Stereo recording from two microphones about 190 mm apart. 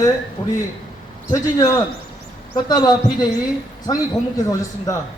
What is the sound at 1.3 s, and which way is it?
A man's voice, 20° left (ahead or behind).